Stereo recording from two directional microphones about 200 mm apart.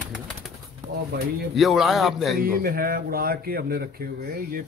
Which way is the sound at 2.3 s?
50° right (ahead or behind).